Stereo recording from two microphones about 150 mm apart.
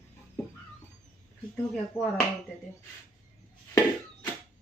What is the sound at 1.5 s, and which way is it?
Speech, centre (ahead or behind).